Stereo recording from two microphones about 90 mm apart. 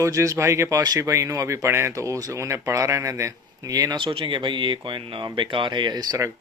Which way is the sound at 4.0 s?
70° right (ahead or behind).